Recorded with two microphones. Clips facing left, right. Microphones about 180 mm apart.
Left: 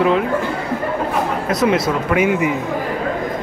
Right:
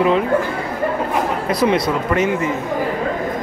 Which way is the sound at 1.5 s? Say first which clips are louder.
Even; centre (ahead or behind).